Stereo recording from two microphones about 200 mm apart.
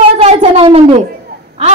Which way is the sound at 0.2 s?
30° right (ahead or behind).